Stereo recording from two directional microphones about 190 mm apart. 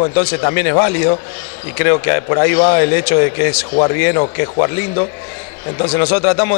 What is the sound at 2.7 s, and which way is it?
A man's voice, 15° left (ahead or behind).